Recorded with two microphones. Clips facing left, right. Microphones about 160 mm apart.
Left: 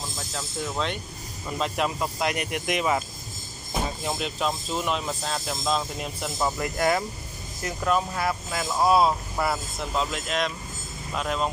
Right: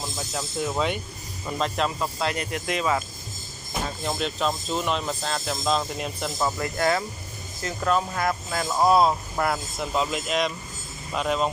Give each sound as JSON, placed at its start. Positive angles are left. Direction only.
{"t": 0.3, "sound": "speech", "side_deg": -10}
{"t": 1.6, "sound": "speech", "side_deg": 10}
{"t": 3.8, "sound": "speech", "side_deg": 5}
{"t": 6.4, "sound": "speech", "side_deg": 20}